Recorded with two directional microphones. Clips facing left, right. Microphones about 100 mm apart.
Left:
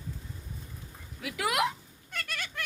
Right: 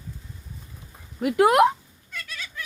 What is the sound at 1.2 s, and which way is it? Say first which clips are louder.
Speech: right 12 dB; 50° right (ahead or behind).